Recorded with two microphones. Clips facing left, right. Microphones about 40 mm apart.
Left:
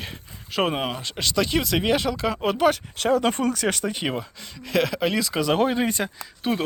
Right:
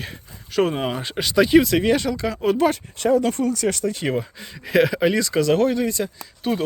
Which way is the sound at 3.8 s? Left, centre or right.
Left.